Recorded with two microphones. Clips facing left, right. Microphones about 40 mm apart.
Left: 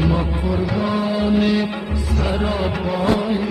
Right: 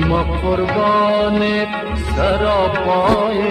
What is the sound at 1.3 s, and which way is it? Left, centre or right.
Music, right.